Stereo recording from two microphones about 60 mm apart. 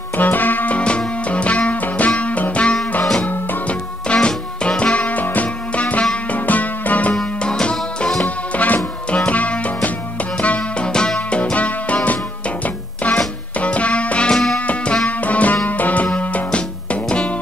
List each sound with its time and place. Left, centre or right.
0.2 s music: left
7.2 s music: centre
8.5 s music: left
14.3 s music: centre
15.0 s music: left